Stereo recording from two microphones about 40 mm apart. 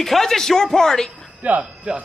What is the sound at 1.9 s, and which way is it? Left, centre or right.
Speech, right.